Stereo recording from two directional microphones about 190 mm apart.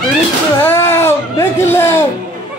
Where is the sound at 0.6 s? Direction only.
15° left (ahead or behind).